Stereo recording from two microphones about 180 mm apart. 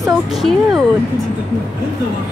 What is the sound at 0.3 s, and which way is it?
Speech, centre (ahead or behind).